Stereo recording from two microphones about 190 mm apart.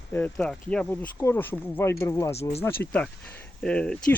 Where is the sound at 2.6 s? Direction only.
10° left (ahead or behind).